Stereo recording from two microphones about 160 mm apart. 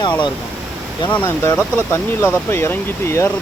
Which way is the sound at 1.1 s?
15° left (ahead or behind).